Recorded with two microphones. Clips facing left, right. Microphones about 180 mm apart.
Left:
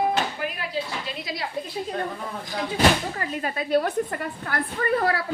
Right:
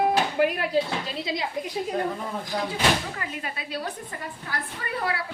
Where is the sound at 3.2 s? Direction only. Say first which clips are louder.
Left 6 dB; 45° left (ahead or behind).